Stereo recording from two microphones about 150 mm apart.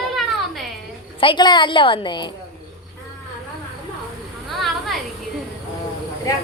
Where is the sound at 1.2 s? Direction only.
30° left (ahead or behind).